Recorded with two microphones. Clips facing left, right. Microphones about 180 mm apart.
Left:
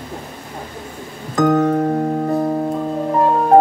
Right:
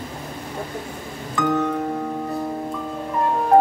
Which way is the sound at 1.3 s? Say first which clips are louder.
Left 7 dB; 45° left (ahead or behind).